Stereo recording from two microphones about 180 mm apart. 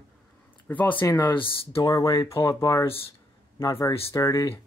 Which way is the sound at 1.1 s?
25° left (ahead or behind).